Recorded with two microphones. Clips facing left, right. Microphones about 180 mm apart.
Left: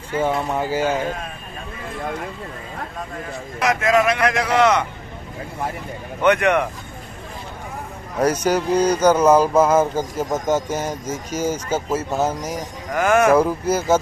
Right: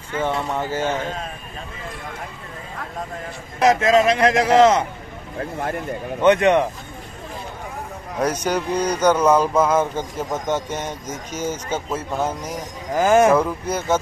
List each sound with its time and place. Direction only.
0.2 s speech: 10° left (ahead or behind)
3.6 s a man's voice: 25° right (ahead or behind)
5.4 s speech: 55° right (ahead or behind)
6.2 s a man's voice: 25° right (ahead or behind)
8.2 s speech: 5° left (ahead or behind)
12.9 s speech: 30° right (ahead or behind)
13.3 s speech: 5° left (ahead or behind)